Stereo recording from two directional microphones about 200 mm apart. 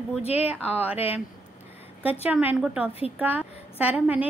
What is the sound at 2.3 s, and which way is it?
A woman's voice, 5° right (ahead or behind).